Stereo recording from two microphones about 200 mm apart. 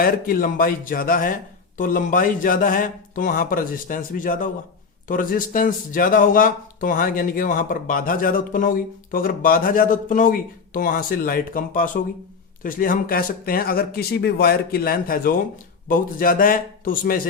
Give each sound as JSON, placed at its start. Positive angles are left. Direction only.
{"t": 0.0, "sound": "speech", "side_deg": 45}